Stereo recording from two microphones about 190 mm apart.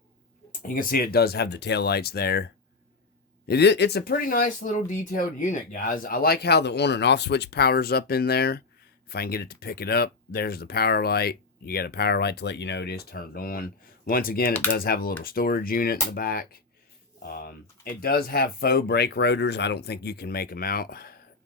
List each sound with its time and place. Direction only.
0.7 s speech: 50° left (ahead or behind)